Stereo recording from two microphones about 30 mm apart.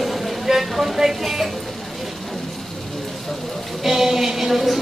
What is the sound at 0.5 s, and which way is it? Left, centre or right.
Speech, centre.